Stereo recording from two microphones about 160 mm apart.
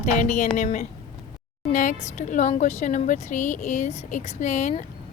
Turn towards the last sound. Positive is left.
turn(degrees=50)  # may be behind; listen again after turning